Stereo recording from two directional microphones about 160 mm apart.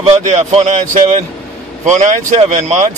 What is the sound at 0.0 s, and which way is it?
Speech, 40° right (ahead or behind).